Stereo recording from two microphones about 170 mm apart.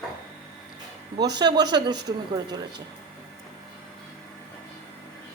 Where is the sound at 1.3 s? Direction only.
25° right (ahead or behind).